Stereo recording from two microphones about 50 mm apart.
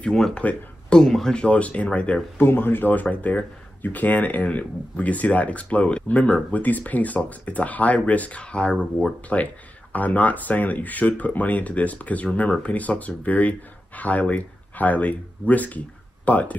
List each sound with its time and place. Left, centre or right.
0.3 s speech: left
1.0 s speech: centre
1.3 s speech: left
2.3 s speech: left